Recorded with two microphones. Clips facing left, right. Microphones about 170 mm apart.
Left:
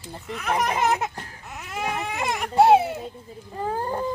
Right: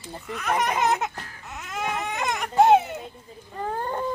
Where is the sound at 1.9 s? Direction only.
5° left (ahead or behind).